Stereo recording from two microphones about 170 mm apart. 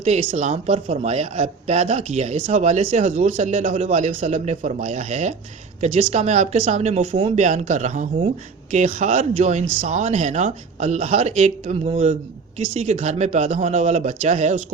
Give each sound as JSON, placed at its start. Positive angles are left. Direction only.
{"t": 0.0, "sound": "speech", "side_deg": -35}